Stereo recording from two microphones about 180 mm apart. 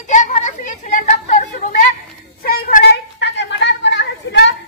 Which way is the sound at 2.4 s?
55° left (ahead or behind).